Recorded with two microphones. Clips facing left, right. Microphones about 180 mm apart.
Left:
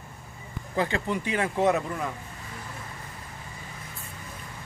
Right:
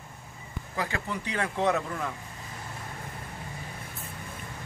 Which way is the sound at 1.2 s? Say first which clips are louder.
Left 3 dB; 15° left (ahead or behind).